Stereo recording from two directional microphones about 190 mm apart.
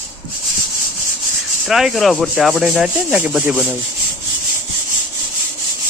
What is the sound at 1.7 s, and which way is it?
Speech, centre (ahead or behind).